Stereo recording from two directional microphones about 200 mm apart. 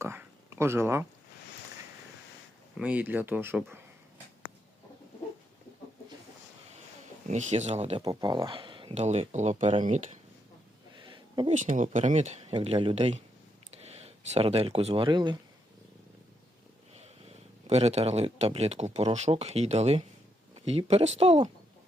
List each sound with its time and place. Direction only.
0.0 s a sound: 10° right (ahead or behind)
2.7 s speech: 5° right (ahead or behind)
7.3 s speech: 35° right (ahead or behind)
8.0 s speech: 20° right (ahead or behind)
10.9 s a sound: 25° right (ahead or behind)
11.5 s speech: 40° right (ahead or behind); by 15.4 s 20° right (ahead or behind)
16.9 s a man's voice: 30° right (ahead or behind)